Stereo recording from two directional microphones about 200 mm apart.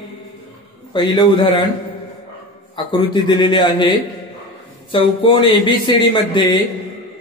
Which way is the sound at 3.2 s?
20° left (ahead or behind).